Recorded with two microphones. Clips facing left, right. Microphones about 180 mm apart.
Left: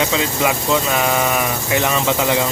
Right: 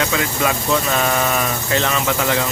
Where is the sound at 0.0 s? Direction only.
20° left (ahead or behind).